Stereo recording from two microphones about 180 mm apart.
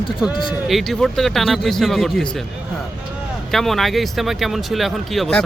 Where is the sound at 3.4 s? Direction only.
Centre (ahead or behind).